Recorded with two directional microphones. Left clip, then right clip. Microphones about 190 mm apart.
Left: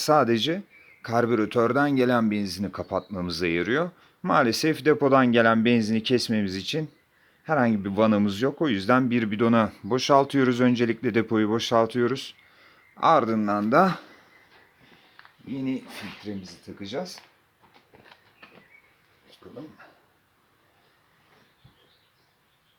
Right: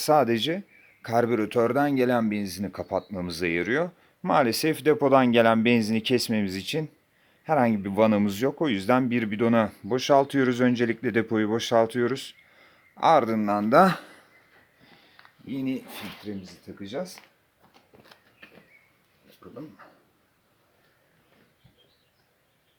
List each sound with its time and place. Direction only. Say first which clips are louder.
0.0 s a man's voice: left 1 dB; centre (ahead or behind)
15.1 s speech: right 1 dB; 20° right (ahead or behind)
19.4 s speech: even; 30° right (ahead or behind)